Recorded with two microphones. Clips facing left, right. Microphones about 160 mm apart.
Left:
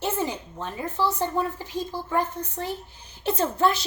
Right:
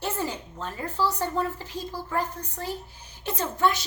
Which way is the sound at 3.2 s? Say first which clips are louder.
Left 3 dB; 30° left (ahead or behind).